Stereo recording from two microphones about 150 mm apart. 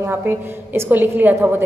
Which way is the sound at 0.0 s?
15° right (ahead or behind).